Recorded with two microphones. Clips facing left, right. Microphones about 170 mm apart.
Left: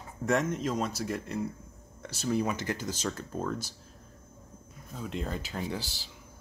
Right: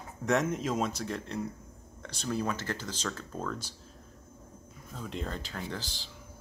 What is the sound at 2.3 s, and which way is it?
Speech, 15° left (ahead or behind).